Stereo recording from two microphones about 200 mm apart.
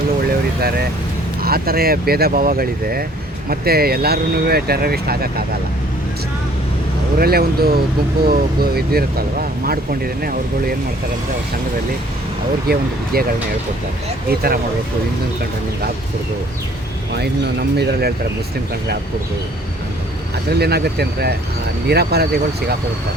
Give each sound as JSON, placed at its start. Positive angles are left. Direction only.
{"t": 0.6, "sound": "speech", "side_deg": -50}
{"t": 7.2, "sound": "speech", "side_deg": -50}
{"t": 13.1, "sound": "speech", "side_deg": -50}
{"t": 17.2, "sound": "speech", "side_deg": -55}
{"t": 20.5, "sound": "speech", "side_deg": -55}